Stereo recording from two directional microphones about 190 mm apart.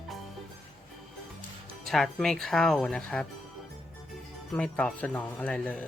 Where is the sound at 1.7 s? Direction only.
Centre (ahead or behind).